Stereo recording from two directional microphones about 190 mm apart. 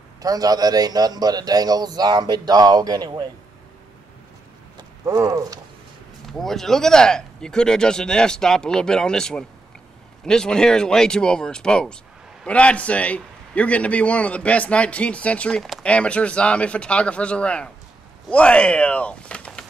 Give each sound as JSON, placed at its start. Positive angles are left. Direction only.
{"t": 0.2, "sound": "a man's voice", "side_deg": -20}
{"t": 5.0, "sound": "a sound", "side_deg": -15}
{"t": 6.3, "sound": "a man's voice", "side_deg": 0}